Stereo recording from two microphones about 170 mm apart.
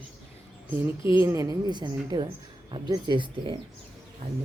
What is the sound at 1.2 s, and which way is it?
Speech, 20° right (ahead or behind).